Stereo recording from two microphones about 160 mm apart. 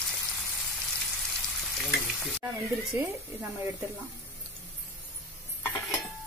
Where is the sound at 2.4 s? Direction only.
20° right (ahead or behind).